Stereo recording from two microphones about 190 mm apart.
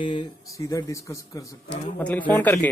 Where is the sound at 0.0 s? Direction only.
20° left (ahead or behind).